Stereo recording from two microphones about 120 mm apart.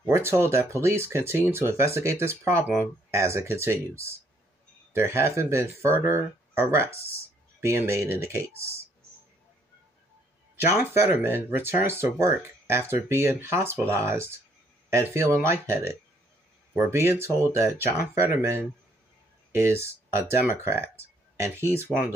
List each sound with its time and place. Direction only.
0.0 s speech: 20° right (ahead or behind)
10.5 s speech: 20° right (ahead or behind)